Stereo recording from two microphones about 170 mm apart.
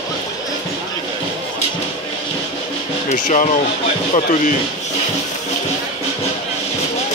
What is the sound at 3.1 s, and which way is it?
Speech, 45° left (ahead or behind).